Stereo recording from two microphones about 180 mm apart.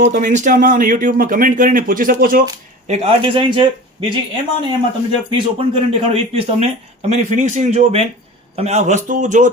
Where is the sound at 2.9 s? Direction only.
30° right (ahead or behind).